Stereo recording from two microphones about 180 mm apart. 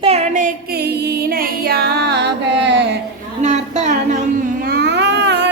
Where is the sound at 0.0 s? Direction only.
35° right (ahead or behind); by 2.3 s 65° right (ahead or behind).